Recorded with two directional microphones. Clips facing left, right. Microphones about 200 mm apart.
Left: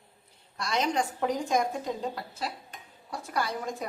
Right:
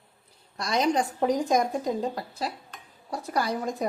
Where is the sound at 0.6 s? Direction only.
35° right (ahead or behind).